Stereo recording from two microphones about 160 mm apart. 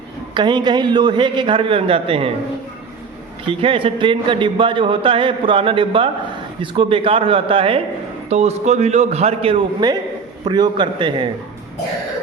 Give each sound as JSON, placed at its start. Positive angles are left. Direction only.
{"t": 0.3, "sound": "a man's voice", "side_deg": -30}
{"t": 3.6, "sound": "a man's voice", "side_deg": -35}